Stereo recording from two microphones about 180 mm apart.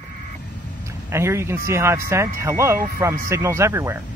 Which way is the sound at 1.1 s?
15° right (ahead or behind).